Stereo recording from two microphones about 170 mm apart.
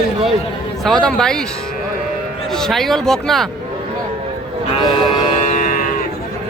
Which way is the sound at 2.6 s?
Centre (ahead or behind).